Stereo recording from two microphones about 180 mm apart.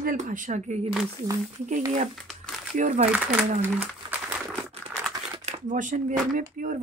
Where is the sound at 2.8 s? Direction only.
40° right (ahead or behind).